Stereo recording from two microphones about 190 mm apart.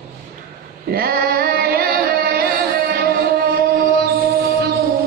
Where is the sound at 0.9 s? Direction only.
55° right (ahead or behind).